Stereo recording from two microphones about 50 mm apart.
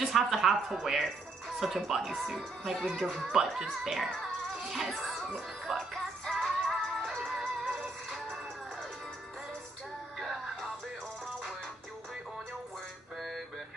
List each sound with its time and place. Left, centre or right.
0.0 s speech: centre
4.6 s music: centre
7.6 s music: centre
10.1 s music: centre